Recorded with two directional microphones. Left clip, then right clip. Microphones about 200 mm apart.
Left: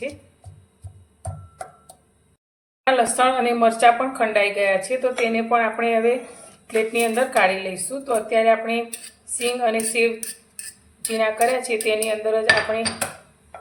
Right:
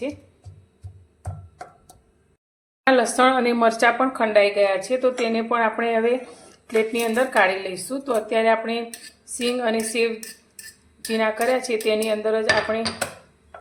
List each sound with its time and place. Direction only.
2.8 s speech: 35° right (ahead or behind)
11.1 s speech: 30° right (ahead or behind)